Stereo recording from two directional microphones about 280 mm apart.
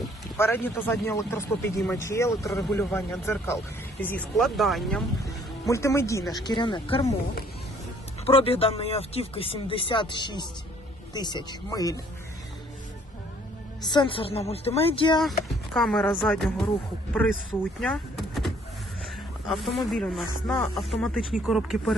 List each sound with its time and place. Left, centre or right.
0.3 s speech: centre
8.2 s speech: centre
13.8 s speech: centre
15.2 s speech: centre